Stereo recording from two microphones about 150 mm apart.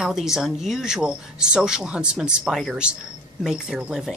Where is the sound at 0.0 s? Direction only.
5° right (ahead or behind).